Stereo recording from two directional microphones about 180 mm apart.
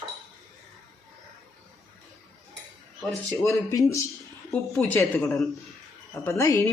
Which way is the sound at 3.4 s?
15° left (ahead or behind).